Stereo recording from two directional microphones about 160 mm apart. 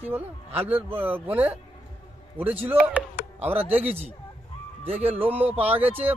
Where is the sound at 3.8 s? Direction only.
40° right (ahead or behind).